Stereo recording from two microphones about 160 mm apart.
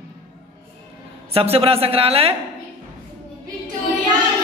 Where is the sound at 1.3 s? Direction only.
40° right (ahead or behind).